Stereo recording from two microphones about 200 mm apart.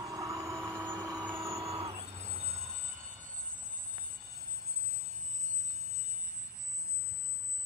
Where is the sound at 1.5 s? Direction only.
30° right (ahead or behind).